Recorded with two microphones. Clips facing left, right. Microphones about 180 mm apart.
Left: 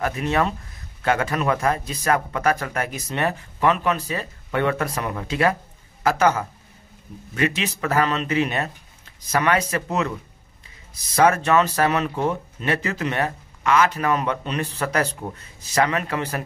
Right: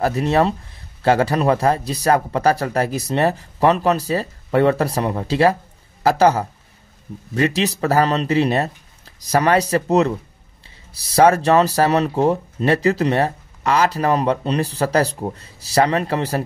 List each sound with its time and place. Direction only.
0.0 s speech: 35° right (ahead or behind)